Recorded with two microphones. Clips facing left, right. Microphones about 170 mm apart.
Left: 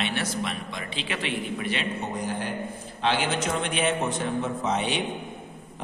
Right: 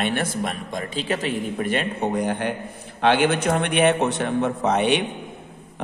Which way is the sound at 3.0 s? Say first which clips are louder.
Right 7 dB; 55° right (ahead or behind).